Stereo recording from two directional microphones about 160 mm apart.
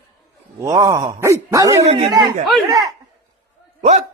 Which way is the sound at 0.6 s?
20° right (ahead or behind).